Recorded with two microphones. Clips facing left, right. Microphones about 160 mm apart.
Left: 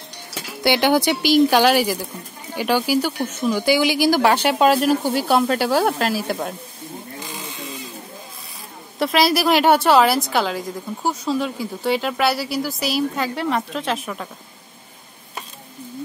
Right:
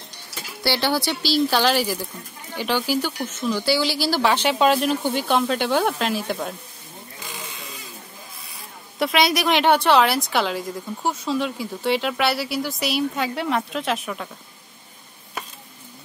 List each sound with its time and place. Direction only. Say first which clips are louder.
0.6 s speech: left 5 dB; 20° left (ahead or behind)
4.6 s a woman's voice: left 3 dB; 5° left (ahead or behind)
9.0 s a woman's voice: left 2 dB; centre (ahead or behind)